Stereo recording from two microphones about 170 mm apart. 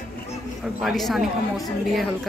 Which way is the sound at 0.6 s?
Centre (ahead or behind).